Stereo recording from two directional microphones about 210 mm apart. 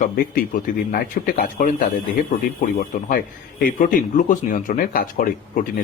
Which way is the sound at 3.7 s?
40° left (ahead or behind).